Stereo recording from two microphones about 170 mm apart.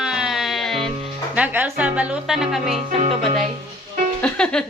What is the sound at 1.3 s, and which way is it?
Music, 10° right (ahead or behind).